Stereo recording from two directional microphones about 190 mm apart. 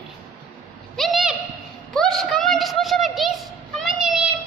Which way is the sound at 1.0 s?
Centre (ahead or behind).